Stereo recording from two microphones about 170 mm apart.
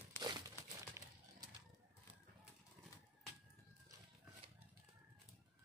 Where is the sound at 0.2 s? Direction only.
15° left (ahead or behind).